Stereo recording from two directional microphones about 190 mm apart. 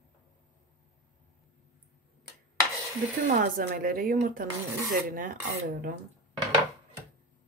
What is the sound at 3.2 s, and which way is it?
Speech, 45° right (ahead or behind).